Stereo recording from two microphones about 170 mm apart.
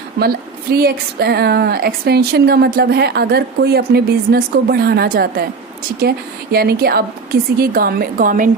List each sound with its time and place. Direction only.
0.2 s a woman's voice: 65° right (ahead or behind)